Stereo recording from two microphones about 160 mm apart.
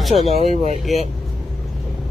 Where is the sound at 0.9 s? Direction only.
Centre (ahead or behind).